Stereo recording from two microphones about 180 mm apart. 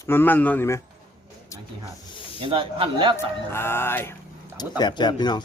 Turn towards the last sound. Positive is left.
turn(degrees=25)  # may be behind; listen again after turning